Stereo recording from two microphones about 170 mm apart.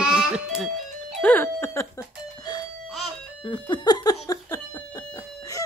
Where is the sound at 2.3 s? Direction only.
25° left (ahead or behind).